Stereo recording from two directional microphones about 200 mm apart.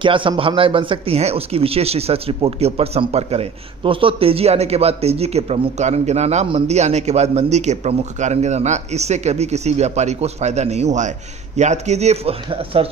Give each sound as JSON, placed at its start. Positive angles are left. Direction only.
{"t": 0.0, "sound": "speech", "side_deg": -25}